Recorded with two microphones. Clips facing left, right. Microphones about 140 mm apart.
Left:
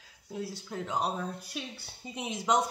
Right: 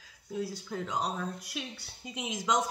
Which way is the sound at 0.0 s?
25° left (ahead or behind).